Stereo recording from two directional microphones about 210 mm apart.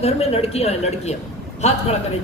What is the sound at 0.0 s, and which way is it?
A woman's voice, 30° left (ahead or behind).